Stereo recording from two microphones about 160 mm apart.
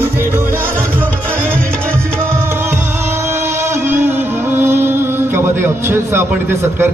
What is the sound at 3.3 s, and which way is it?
Music, 15° right (ahead or behind).